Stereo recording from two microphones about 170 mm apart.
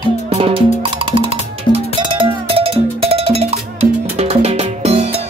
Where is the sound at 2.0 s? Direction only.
30° right (ahead or behind).